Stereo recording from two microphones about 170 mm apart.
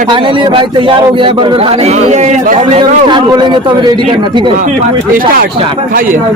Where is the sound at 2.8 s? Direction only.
25° right (ahead or behind).